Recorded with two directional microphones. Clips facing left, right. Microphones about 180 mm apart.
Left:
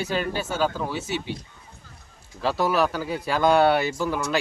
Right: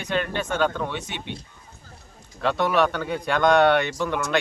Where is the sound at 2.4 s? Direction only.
5° left (ahead or behind).